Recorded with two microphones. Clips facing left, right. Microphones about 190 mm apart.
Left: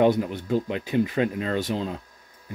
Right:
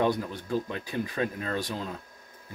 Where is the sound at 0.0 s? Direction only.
20° left (ahead or behind).